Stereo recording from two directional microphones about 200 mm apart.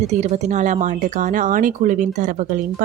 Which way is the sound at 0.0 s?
35° right (ahead or behind).